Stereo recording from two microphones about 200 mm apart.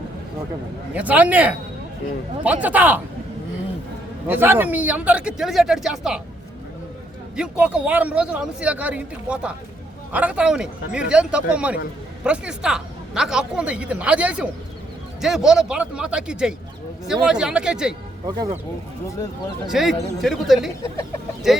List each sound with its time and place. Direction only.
0.9 s speech: 5° right (ahead or behind)
4.3 s speech: 10° right (ahead or behind)
7.3 s speech: 5° right (ahead or behind)
18.3 s speech: 20° right (ahead or behind)
19.7 s speech: centre (ahead or behind)